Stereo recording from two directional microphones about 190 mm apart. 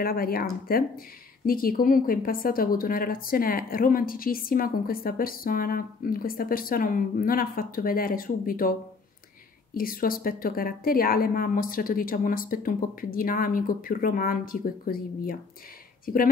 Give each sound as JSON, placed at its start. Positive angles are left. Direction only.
{"t": 0.0, "sound": "speech", "side_deg": 50}
{"t": 9.8, "sound": "speech", "side_deg": 50}